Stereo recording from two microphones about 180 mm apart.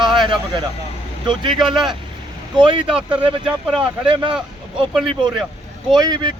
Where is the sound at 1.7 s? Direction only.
25° right (ahead or behind).